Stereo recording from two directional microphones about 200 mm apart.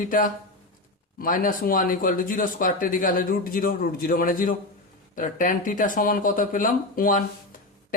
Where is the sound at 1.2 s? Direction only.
45° left (ahead or behind).